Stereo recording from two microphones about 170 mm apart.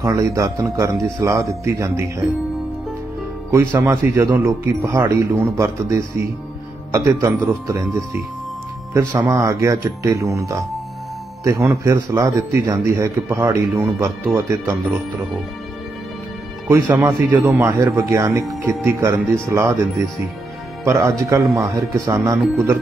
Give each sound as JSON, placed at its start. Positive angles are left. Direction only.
{"t": 0.0, "sound": "a man's voice", "side_deg": -20}
{"t": 3.5, "sound": "a man's voice", "side_deg": -15}
{"t": 8.9, "sound": "a man's voice", "side_deg": -15}
{"t": 16.6, "sound": "a man's voice", "side_deg": -15}
{"t": 21.5, "sound": "a man's voice", "side_deg": 0}
{"t": 21.9, "sound": "speech", "side_deg": -20}